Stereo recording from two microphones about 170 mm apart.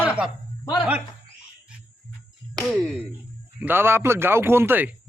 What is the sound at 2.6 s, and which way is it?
Speech, centre (ahead or behind).